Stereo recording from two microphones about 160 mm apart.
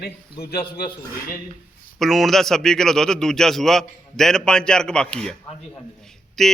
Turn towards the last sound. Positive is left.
turn(degrees=0)  # may be behind; listen again after turning